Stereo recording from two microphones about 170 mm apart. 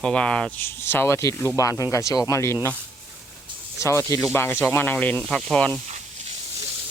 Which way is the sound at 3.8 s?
20° left (ahead or behind).